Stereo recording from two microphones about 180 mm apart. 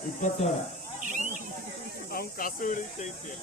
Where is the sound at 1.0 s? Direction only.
45° right (ahead or behind).